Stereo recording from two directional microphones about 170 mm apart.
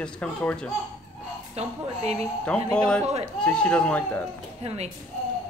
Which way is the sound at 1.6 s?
40° right (ahead or behind).